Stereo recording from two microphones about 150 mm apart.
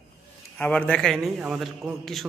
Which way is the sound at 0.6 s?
10° left (ahead or behind).